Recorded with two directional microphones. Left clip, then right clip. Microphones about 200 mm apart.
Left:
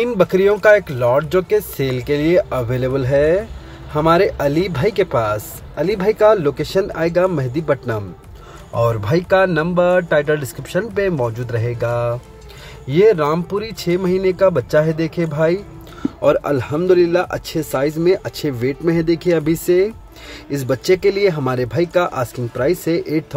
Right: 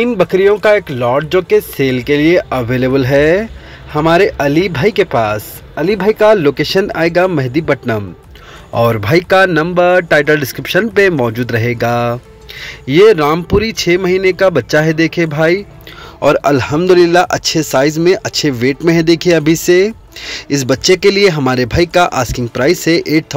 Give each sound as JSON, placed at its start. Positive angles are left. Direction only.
{"t": 0.0, "sound": "a man's voice", "side_deg": 0}